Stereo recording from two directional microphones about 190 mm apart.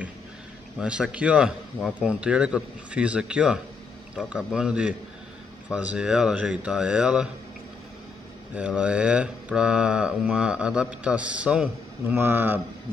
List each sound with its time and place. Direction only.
0.7 s speech: 5° right (ahead or behind)
8.5 s speech: 5° right (ahead or behind)